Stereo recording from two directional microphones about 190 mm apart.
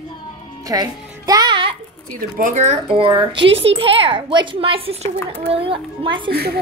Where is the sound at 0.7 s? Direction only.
20° right (ahead or behind).